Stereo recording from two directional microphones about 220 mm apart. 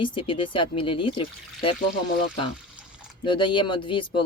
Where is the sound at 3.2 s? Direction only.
20° left (ahead or behind).